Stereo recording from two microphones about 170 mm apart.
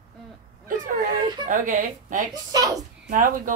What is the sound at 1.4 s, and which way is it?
Speech, 50° right (ahead or behind).